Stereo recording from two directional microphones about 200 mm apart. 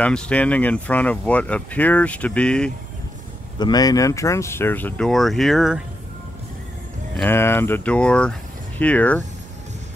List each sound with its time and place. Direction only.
0.0 s speech: 5° left (ahead or behind)
3.5 s speech: 20° left (ahead or behind); by 5.9 s centre (ahead or behind)
7.2 s speech: 10° left (ahead or behind)